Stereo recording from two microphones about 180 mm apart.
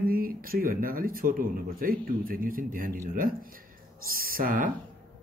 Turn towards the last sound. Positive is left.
turn(degrees=-50)  # may be behind; listen again after turning